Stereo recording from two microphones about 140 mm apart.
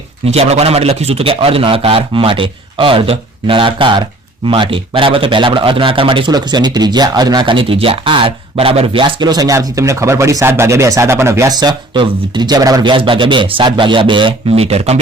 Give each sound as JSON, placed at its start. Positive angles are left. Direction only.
{"t": 0.3, "sound": "a man's voice", "side_deg": -50}